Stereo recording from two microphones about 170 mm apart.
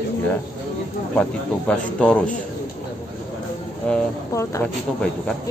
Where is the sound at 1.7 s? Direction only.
5° left (ahead or behind).